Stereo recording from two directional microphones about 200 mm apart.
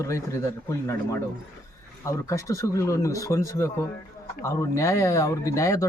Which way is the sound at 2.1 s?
15° left (ahead or behind).